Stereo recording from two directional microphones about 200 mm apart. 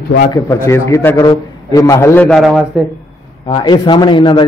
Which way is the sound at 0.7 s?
10° left (ahead or behind).